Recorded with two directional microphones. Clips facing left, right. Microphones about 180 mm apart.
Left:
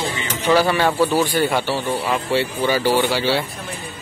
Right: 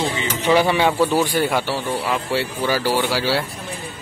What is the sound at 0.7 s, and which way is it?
Speech, 5° right (ahead or behind).